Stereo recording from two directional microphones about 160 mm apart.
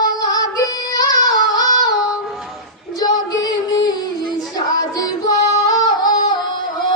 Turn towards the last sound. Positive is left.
turn(degrees=25)  # may be behind; listen again after turning